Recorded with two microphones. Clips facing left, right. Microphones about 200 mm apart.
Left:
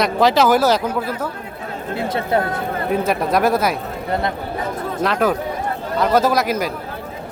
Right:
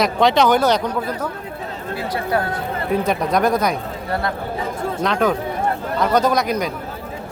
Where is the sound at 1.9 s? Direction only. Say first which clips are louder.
Left 2 dB; 25° left (ahead or behind).